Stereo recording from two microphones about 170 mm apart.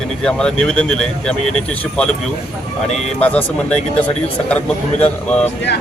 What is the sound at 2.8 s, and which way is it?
Speech, 40° left (ahead or behind).